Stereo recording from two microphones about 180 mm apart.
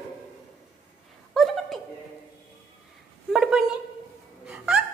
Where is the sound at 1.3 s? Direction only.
Centre (ahead or behind).